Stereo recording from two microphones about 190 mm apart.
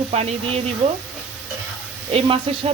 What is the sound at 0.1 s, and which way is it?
Speech, 35° right (ahead or behind).